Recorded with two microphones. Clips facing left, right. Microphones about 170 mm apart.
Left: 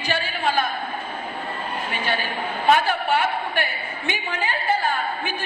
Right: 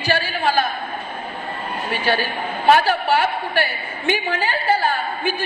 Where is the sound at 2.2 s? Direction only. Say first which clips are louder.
Right 2 dB; 90° right.